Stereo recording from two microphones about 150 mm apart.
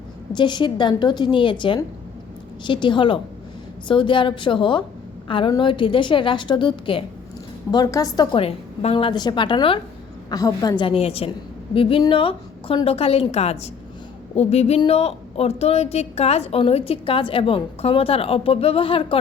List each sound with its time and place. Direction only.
0.3 s a woman's voice: 30° left (ahead or behind)
14.3 s a sound: 45° left (ahead or behind)
14.8 s a woman's voice: 45° left (ahead or behind)